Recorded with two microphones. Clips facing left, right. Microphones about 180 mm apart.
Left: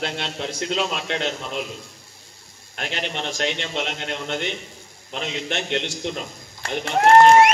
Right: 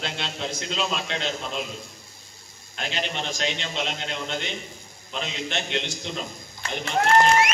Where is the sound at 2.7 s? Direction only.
60° left (ahead or behind).